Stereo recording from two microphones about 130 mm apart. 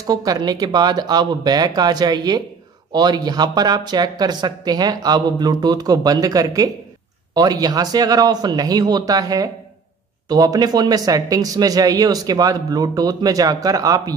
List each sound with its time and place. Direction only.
0.0 s speech: 30° right (ahead or behind)